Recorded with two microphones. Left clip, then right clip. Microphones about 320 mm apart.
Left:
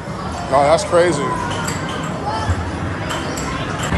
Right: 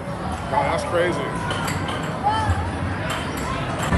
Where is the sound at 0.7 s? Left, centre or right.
Centre.